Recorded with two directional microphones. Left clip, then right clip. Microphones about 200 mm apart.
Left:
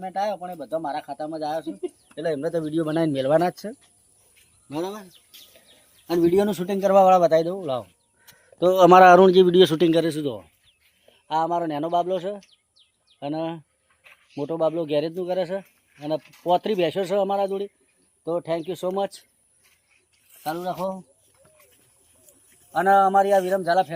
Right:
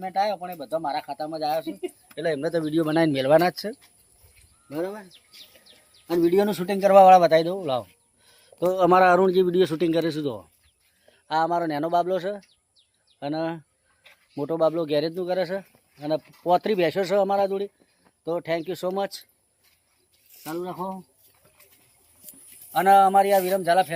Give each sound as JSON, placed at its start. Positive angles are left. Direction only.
{"t": 0.0, "sound": "speech", "side_deg": 10}
{"t": 4.7, "sound": "speech", "side_deg": 55}
{"t": 6.2, "sound": "a man's voice", "side_deg": 25}
{"t": 6.5, "sound": "speech", "side_deg": 5}
{"t": 8.6, "sound": "speech", "side_deg": 45}
{"t": 8.9, "sound": "a man's voice", "side_deg": 25}
{"t": 12.5, "sound": "bird", "side_deg": 20}
{"t": 14.3, "sound": "speech", "side_deg": 5}
{"t": 18.3, "sound": "a man's voice", "side_deg": 25}
{"t": 20.4, "sound": "speech", "side_deg": 50}
{"t": 22.7, "sound": "speech", "side_deg": -10}